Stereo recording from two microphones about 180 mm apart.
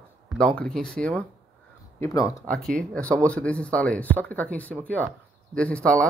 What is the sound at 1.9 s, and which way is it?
Speech, 15° left (ahead or behind).